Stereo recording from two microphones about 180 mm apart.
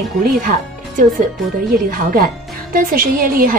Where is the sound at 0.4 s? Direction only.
50° right (ahead or behind).